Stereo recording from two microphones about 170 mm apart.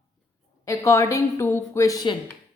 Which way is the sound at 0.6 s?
20° left (ahead or behind).